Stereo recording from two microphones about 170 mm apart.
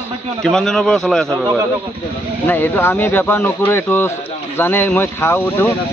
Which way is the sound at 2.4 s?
10° left (ahead or behind).